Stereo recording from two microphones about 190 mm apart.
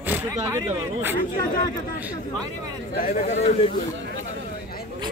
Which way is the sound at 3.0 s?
30° left (ahead or behind).